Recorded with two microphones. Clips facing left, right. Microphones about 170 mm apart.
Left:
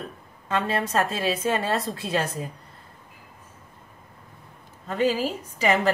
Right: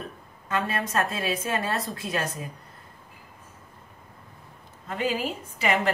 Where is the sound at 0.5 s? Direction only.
30° left (ahead or behind).